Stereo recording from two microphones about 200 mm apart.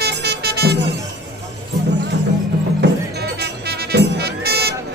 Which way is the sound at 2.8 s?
55° right (ahead or behind).